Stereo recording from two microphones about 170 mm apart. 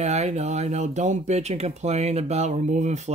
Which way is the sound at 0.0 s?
40° right (ahead or behind).